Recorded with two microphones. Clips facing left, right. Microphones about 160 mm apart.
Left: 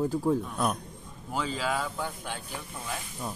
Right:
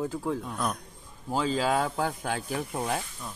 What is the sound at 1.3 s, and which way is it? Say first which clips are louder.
Speech: right 4 dB; 35° right (ahead or behind).